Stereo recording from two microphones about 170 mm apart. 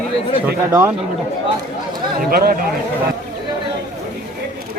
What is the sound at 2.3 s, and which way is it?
Speech, 60° right (ahead or behind).